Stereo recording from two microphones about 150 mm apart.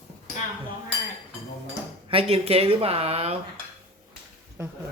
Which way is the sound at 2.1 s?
40° right (ahead or behind).